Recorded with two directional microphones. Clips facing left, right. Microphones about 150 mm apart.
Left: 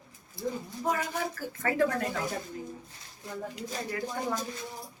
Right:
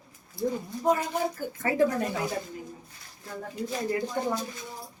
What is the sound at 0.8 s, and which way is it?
A woman's voice, 20° right (ahead or behind).